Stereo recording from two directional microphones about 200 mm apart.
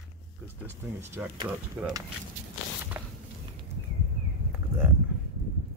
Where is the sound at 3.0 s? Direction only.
10° right (ahead or behind).